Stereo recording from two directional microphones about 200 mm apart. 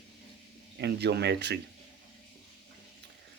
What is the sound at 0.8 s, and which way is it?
Speech, 55° right (ahead or behind).